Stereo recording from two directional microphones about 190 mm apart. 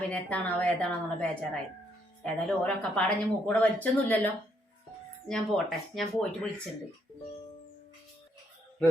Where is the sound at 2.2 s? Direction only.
5° left (ahead or behind).